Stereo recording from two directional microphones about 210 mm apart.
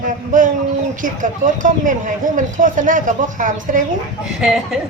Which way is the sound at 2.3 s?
40° right (ahead or behind).